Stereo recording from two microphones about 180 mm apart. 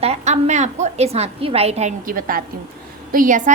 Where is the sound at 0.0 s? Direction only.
35° right (ahead or behind).